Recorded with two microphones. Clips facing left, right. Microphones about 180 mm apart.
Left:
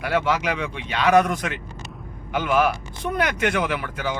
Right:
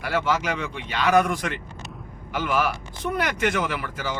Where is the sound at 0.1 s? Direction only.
60° left (ahead or behind).